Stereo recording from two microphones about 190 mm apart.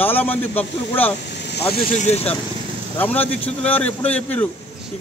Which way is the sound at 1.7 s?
45° left (ahead or behind).